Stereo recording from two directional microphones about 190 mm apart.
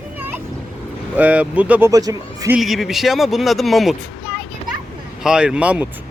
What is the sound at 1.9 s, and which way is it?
Speech, 20° right (ahead or behind).